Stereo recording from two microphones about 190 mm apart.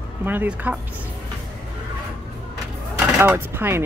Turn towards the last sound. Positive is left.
turn(degrees=-10)  # may be behind; listen again after turning